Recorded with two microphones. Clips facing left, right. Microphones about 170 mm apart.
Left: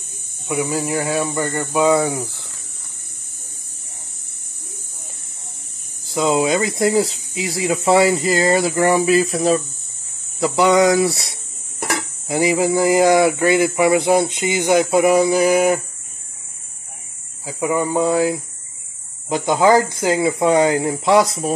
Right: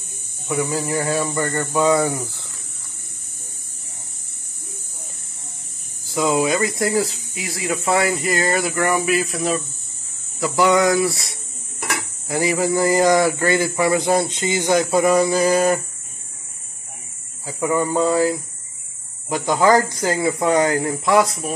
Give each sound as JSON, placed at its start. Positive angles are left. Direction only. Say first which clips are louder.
{"t": 0.5, "sound": "speech", "louder": "left 1 dB", "side_deg": 15}
{"t": 6.0, "sound": "speech", "louder": "left 2 dB", "side_deg": 20}
{"t": 10.4, "sound": "speech", "louder": "left 2 dB", "side_deg": 20}
{"t": 17.5, "sound": "speech", "louder": "left 1 dB", "side_deg": 15}